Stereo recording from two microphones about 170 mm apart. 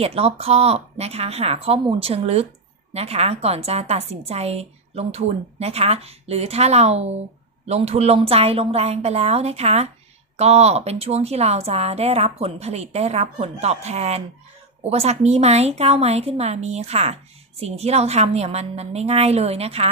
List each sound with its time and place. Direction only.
0.0 s a woman's voice: 35° right (ahead or behind)